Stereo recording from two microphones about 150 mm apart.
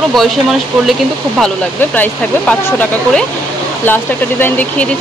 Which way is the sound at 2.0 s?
10° left (ahead or behind).